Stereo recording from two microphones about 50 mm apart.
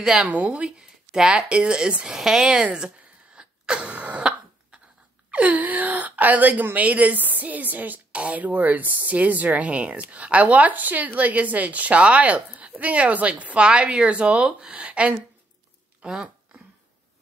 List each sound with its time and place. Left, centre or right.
0.0 s a woman's voice: centre
3.3 s throat clearing: centre
5.3 s a woman's voice: right